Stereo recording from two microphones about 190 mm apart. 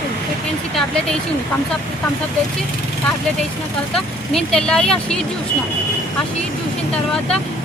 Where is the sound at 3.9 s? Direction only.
5° left (ahead or behind).